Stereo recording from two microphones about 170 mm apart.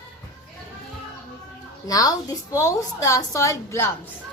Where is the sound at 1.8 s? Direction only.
20° left (ahead or behind).